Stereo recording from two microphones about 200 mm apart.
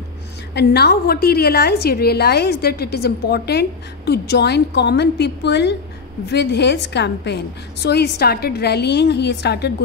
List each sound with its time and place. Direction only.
0.6 s a woman's voice: 55° left (ahead or behind)